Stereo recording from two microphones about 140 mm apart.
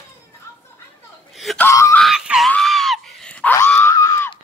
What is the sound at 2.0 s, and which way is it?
Screaming, 5° right (ahead or behind).